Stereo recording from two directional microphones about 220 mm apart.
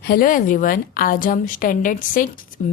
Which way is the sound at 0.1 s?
40° left (ahead or behind).